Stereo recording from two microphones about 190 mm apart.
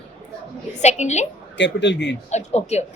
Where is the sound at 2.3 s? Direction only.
35° left (ahead or behind).